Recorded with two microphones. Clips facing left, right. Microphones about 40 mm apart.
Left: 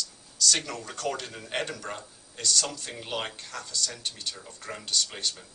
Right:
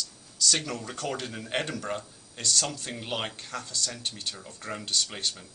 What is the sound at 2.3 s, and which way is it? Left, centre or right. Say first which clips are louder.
Speech: left 1 dB; centre.